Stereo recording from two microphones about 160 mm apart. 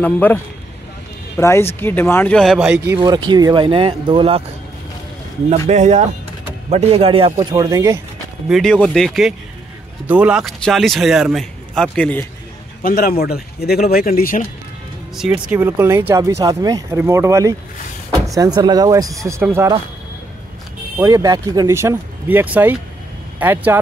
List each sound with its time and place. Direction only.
0.0 s speech: 10° left (ahead or behind)
3.0 s speech: 25° right (ahead or behind)
5.7 s speech: 45° right (ahead or behind)
7.3 s speech: 20° right (ahead or behind)
8.5 s a man's voice: centre (ahead or behind)
12.8 s speech: 65° left (ahead or behind)
13.2 s speech: 75° left (ahead or behind)
15.1 s a man's voice: 5° right (ahead or behind)
21.0 s speech: 20° right (ahead or behind)